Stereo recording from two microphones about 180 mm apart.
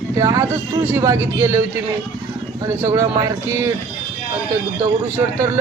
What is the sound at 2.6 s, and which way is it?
Speech, 15° right (ahead or behind).